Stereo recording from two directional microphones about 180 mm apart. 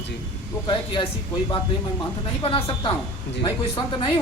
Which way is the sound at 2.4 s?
25° left (ahead or behind).